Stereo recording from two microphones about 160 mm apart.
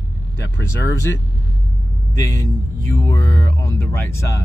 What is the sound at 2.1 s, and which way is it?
Speech, 20° left (ahead or behind).